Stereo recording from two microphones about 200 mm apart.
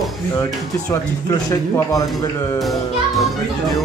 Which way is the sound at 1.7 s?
15° left (ahead or behind).